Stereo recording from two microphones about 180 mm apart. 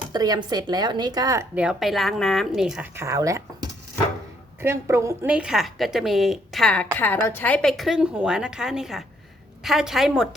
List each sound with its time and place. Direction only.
0.1 s speech: 20° right (ahead or behind)
1.5 s a woman's voice: 5° right (ahead or behind)
2.9 s a woman's voice: 15° right (ahead or behind)